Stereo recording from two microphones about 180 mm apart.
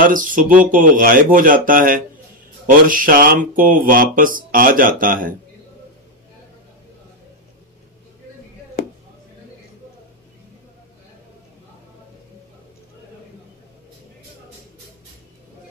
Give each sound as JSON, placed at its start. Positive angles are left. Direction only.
{"t": 0.0, "sound": "speech", "side_deg": -50}